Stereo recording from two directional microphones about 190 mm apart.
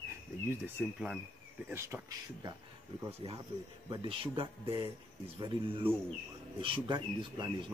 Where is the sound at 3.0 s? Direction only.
25° right (ahead or behind).